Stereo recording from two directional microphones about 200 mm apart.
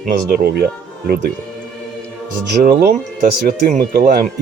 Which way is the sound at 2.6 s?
45° right (ahead or behind).